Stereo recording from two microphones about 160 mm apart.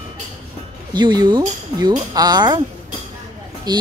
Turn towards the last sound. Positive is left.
turn(degrees=-25)  # may be behind; listen again after turning